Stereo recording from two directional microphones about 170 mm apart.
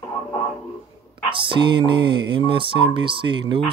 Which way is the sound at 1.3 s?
30° right (ahead or behind).